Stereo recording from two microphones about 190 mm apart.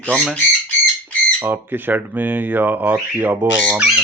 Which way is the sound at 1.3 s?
10° right (ahead or behind).